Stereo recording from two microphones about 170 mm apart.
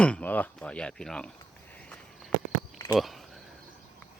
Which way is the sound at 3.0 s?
Centre (ahead or behind).